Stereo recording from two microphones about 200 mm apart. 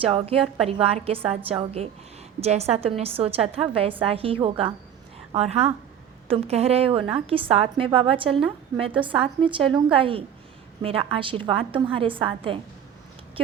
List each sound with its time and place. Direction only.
0.0 s a woman's voice: 30° right (ahead or behind)